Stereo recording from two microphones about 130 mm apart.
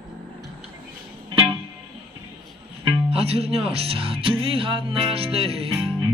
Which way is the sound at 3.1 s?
50° right (ahead or behind).